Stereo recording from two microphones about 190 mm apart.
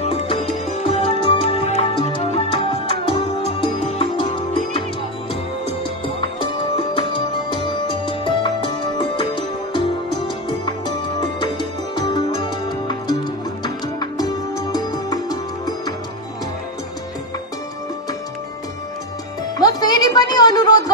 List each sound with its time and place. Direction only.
0.0 s music: 30° left (ahead or behind)
6.0 s music: 25° left (ahead or behind)
11.1 s music: 25° left (ahead or behind)
19.6 s music: 20° left (ahead or behind)